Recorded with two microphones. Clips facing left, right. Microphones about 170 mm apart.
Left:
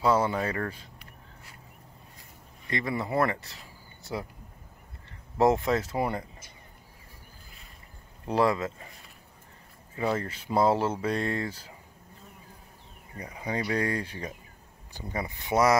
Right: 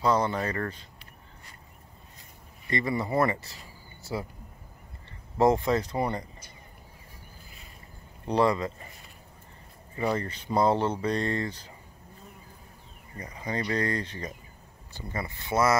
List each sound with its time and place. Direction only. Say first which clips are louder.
0.0 s speech: left 1 dB; 5° left (ahead or behind)
2.6 s speech: right 2 dB; centre (ahead or behind)
5.4 s speech: right 1 dB; centre (ahead or behind)
8.3 s speech: right 1 dB; centre (ahead or behind)
10.1 s speech: left 1 dB; 5° left (ahead or behind)
13.2 s speech: even; 10° left (ahead or behind)